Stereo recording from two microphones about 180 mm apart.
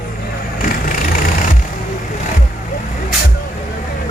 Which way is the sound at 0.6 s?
50° left (ahead or behind).